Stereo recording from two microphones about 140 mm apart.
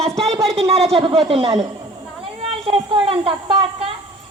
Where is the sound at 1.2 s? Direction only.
40° right (ahead or behind).